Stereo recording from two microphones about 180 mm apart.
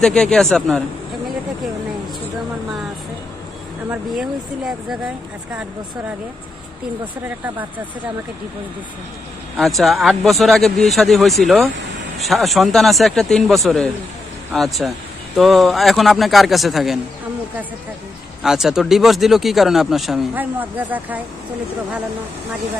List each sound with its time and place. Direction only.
0.0 s speech: 5° left (ahead or behind)
3.9 s speech: centre (ahead or behind)
7.2 s speech: 10° right (ahead or behind)
9.6 s speech: centre (ahead or behind)
18.4 s speech: 5° right (ahead or behind)